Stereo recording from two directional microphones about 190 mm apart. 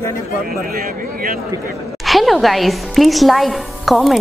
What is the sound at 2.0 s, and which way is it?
A woman's voice, centre (ahead or behind).